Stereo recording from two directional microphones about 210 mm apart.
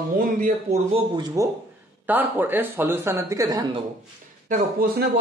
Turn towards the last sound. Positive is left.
turn(degrees=-40)  # may be behind; listen again after turning